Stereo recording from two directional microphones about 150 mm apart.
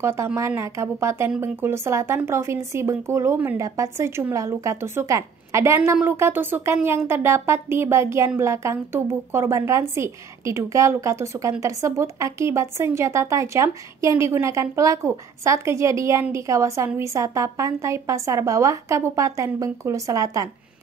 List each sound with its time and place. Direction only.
0.0 s a woman's voice: 20° right (ahead or behind)